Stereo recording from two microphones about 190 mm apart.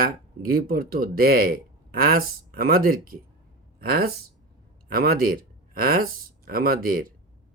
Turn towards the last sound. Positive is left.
turn(degrees=-50)  # may be behind; listen again after turning